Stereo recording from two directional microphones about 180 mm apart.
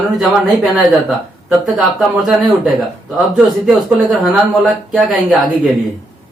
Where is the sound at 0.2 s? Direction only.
Centre (ahead or behind).